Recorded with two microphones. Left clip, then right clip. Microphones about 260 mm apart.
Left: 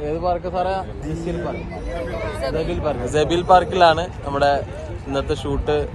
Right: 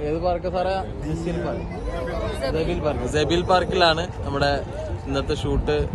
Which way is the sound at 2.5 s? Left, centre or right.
Centre.